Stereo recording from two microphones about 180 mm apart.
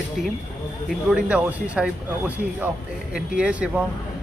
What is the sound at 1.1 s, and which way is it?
Speech, 5° right (ahead or behind).